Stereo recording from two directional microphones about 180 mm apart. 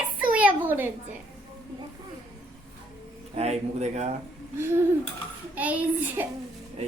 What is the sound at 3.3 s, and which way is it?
Speech, 35° right (ahead or behind).